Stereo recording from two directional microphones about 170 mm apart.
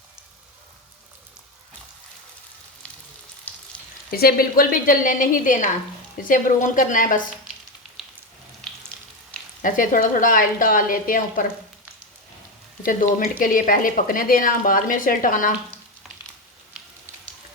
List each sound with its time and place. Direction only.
3.7 s frying: 5° left (ahead or behind)
4.1 s a woman's voice: 60° left (ahead or behind)
9.6 s a woman's voice: 50° left (ahead or behind)
12.8 s a woman's voice: 55° left (ahead or behind)